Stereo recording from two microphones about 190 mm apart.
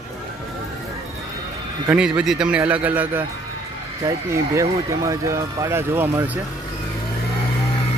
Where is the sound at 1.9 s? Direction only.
5° right (ahead or behind).